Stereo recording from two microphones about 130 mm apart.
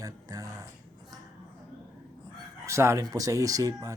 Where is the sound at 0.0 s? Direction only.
25° right (ahead or behind).